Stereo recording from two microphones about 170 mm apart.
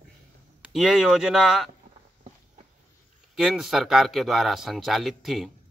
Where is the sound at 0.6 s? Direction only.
5° right (ahead or behind).